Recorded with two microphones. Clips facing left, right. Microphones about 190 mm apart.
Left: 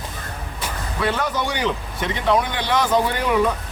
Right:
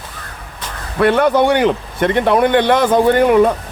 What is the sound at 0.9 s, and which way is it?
Speech, 60° right (ahead or behind).